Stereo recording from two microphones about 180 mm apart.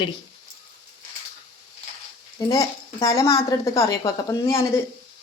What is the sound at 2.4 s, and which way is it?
A woman's voice, 20° left (ahead or behind).